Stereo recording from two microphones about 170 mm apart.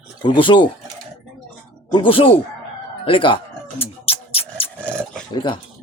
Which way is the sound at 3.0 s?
30° left (ahead or behind).